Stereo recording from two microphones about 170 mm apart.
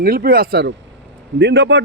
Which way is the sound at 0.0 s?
60° right (ahead or behind).